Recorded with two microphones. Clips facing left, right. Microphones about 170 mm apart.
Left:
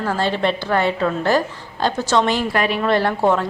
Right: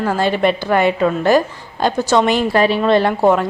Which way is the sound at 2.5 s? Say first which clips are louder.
Right 5 dB; 30° right (ahead or behind).